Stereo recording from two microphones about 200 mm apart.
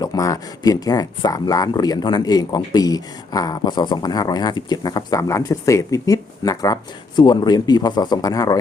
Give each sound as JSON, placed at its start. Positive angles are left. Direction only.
{"t": 0.0, "sound": "speech", "side_deg": 15}